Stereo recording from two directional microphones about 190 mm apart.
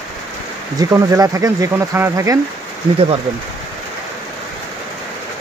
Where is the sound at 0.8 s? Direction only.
15° right (ahead or behind).